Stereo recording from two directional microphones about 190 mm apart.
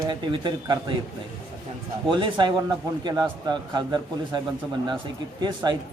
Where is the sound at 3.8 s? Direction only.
25° right (ahead or behind).